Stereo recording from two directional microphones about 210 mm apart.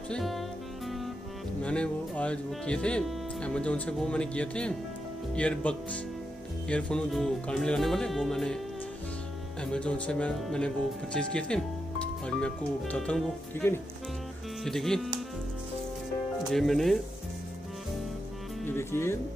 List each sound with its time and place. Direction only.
0.1 s speech: centre (ahead or behind)
1.6 s speech: 5° left (ahead or behind)
9.6 s speech: 5° left (ahead or behind)
16.5 s speech: centre (ahead or behind)
18.7 s speech: 10° left (ahead or behind)